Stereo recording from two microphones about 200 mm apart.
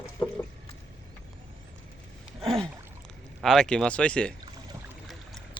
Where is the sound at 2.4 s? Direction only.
25° right (ahead or behind).